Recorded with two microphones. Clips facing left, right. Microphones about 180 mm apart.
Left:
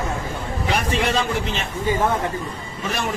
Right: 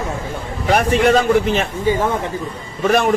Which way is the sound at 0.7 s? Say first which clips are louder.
Right 9 dB; 55° right (ahead or behind).